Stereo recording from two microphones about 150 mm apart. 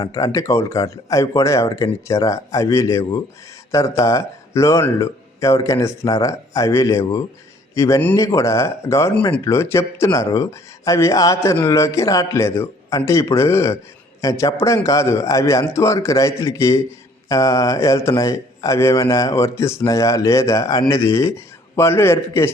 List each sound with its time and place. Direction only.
0.0 s a man's voice: 25° left (ahead or behind)